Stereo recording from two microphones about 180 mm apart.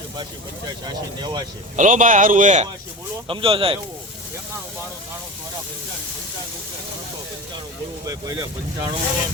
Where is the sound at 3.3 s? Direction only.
30° right (ahead or behind).